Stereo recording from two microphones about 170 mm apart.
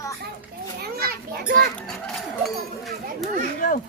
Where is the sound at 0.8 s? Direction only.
65° right (ahead or behind).